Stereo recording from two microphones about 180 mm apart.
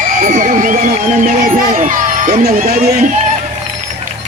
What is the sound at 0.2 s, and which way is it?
Speech, 45° right (ahead or behind).